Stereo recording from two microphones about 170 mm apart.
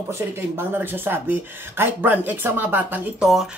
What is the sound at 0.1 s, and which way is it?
Speech, 10° right (ahead or behind).